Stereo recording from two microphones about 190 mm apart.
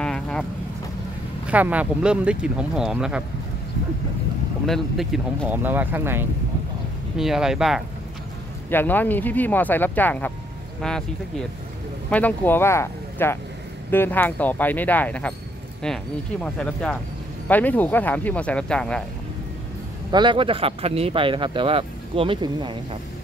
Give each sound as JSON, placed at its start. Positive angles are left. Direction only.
{"t": 0.0, "sound": "vehicle", "side_deg": 5}
{"t": 1.5, "sound": "speech", "side_deg": -10}
{"t": 4.6, "sound": "speech", "side_deg": 0}
{"t": 8.6, "sound": "speech", "side_deg": 10}
{"t": 12.1, "sound": "speech", "side_deg": 10}
{"t": 20.1, "sound": "speech", "side_deg": -25}